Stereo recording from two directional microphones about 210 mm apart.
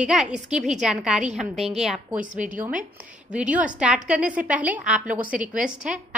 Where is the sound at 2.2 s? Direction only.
35° right (ahead or behind).